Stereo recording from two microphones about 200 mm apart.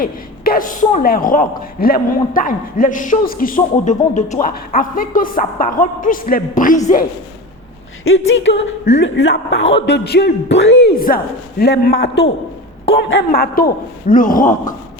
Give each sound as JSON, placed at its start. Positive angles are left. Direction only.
{"t": 0.0, "sound": "a man's voice", "side_deg": 45}
{"t": 8.4, "sound": "a man's voice", "side_deg": 65}
{"t": 14.1, "sound": "a man's voice", "side_deg": 40}